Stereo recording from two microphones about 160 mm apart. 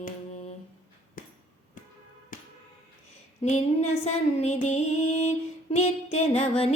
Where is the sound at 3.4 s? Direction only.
45° left (ahead or behind).